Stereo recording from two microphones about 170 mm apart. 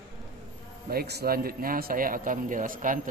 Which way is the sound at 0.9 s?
70° right (ahead or behind).